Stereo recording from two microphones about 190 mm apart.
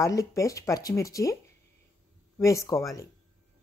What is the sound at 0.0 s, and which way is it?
A woman's voice, 15° left (ahead or behind).